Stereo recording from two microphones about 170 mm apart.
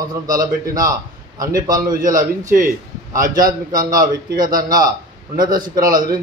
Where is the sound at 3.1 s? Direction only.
55° right (ahead or behind).